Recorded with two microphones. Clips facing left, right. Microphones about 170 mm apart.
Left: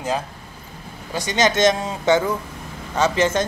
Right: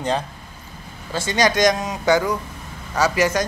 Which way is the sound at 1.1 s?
20° left (ahead or behind).